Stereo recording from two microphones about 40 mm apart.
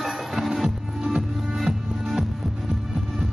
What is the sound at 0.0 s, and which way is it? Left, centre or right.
Music, centre.